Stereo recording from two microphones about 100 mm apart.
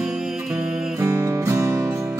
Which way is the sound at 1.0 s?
30° right (ahead or behind).